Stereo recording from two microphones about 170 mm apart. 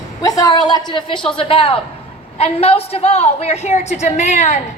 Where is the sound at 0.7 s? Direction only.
25° left (ahead or behind).